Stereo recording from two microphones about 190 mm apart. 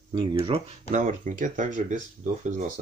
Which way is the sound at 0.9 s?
40° right (ahead or behind).